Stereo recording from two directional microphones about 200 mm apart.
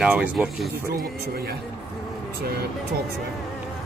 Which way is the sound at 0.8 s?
50° right (ahead or behind).